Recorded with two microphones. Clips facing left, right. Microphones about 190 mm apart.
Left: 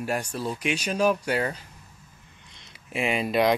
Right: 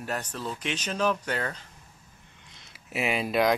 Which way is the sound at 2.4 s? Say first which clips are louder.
Left 1 dB; 5° right (ahead or behind).